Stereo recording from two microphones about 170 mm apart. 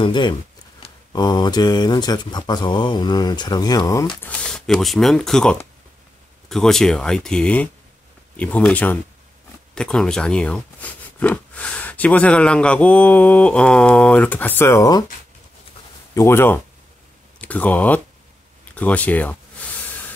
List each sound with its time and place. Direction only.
0.0 s speech: 25° left (ahead or behind)
4.1 s speech: 10° left (ahead or behind)
16.2 s speech: 15° left (ahead or behind)